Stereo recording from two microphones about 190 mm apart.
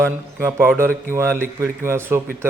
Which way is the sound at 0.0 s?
15° right (ahead or behind).